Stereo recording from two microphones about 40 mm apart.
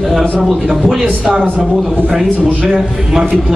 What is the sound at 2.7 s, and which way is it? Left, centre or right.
Speech, centre.